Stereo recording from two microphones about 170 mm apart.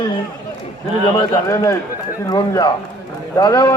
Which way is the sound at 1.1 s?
20° left (ahead or behind).